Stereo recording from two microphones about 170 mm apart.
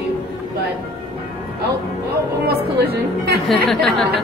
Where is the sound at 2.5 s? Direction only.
65° right (ahead or behind).